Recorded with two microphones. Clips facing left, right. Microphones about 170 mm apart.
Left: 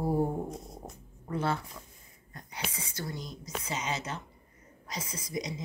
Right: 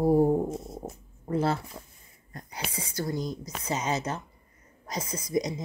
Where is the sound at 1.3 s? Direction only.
40° right (ahead or behind).